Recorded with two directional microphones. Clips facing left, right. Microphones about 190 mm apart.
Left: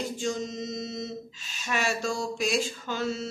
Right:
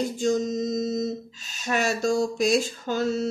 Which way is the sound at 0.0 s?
45° right (ahead or behind).